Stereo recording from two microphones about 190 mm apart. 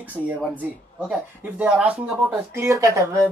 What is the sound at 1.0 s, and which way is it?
Speech, 5° right (ahead or behind).